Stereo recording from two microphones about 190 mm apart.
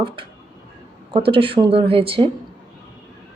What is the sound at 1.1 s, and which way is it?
Speech, 30° right (ahead or behind).